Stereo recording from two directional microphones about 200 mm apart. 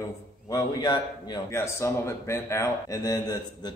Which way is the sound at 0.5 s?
20° left (ahead or behind).